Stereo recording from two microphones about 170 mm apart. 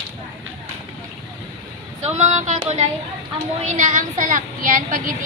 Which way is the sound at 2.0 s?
40° right (ahead or behind).